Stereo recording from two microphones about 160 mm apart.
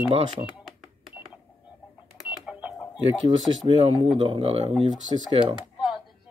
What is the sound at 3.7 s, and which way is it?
Speech, 30° right (ahead or behind).